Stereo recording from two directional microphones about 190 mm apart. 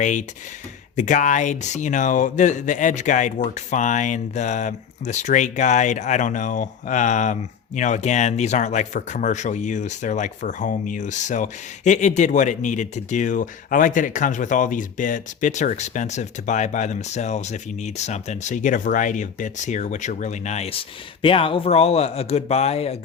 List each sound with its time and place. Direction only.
0.0 s speech: 40° left (ahead or behind)